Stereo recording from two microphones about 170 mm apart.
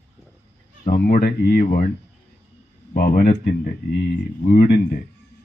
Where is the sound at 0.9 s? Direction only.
60° left (ahead or behind).